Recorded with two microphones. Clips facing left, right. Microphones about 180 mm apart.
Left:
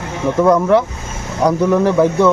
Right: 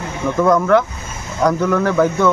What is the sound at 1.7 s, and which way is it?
Speech, 30° left (ahead or behind).